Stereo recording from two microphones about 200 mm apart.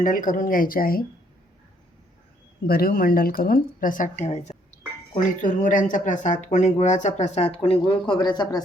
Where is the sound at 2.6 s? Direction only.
50° left (ahead or behind).